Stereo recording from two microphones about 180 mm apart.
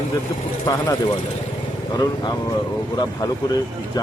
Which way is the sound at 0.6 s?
25° left (ahead or behind).